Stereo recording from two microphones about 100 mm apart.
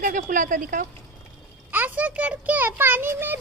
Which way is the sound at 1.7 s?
15° right (ahead or behind).